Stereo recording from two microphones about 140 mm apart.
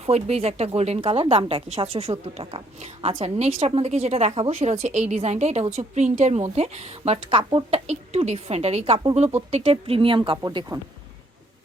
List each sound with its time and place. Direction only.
0.0 s a woman's voice: 50° right (ahead or behind); by 10.8 s 30° right (ahead or behind)